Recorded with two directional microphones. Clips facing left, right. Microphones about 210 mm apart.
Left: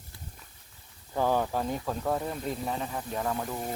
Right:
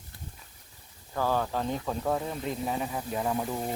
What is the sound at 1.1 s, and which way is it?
Speech, 15° left (ahead or behind).